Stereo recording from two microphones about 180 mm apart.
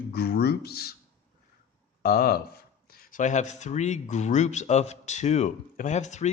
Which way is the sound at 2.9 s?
45° left (ahead or behind).